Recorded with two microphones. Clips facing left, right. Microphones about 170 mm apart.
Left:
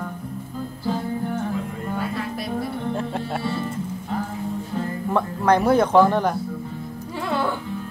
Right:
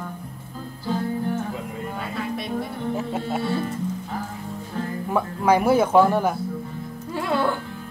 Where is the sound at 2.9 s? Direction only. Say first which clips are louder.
Even; 5° right (ahead or behind).